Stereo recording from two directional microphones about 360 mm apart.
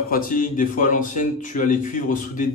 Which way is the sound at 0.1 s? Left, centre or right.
Left.